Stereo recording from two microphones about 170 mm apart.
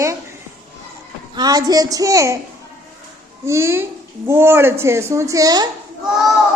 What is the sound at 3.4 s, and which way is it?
Speech, 15° right (ahead or behind).